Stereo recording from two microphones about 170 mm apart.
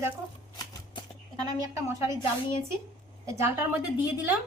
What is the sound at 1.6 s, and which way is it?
A woman's voice, 20° right (ahead or behind).